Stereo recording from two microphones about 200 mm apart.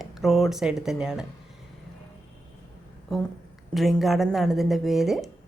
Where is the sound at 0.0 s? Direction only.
Centre (ahead or behind).